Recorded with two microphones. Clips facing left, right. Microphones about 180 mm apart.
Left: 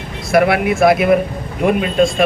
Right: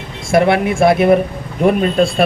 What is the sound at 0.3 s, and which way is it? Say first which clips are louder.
Speech: right 1 dB; 25° right (ahead or behind).